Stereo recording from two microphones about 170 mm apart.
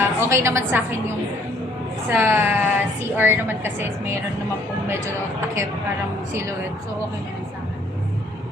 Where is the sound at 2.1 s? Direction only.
15° right (ahead or behind).